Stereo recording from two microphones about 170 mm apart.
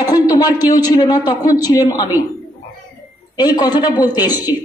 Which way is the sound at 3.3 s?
25° left (ahead or behind).